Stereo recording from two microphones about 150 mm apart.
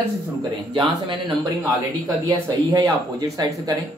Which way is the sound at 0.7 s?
35° right (ahead or behind).